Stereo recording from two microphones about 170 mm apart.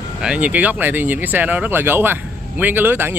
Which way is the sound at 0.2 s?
5° right (ahead or behind).